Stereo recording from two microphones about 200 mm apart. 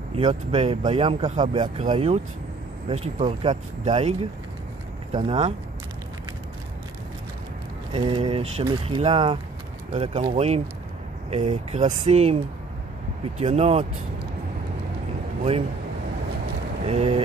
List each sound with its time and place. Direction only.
0.1 s speech: 30° right (ahead or behind)
7.9 s speech: 25° right (ahead or behind)
13.4 s speech: 30° right (ahead or behind)
16.8 s speech: 30° right (ahead or behind)